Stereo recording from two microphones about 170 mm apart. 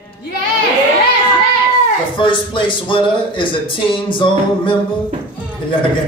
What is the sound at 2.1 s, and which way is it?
Speech, 30° left (ahead or behind).